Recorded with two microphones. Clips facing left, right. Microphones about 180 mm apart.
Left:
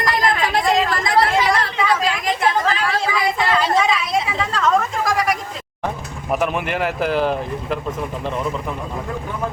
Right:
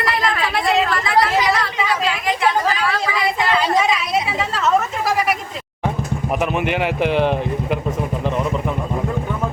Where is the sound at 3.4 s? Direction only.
5° right (ahead or behind).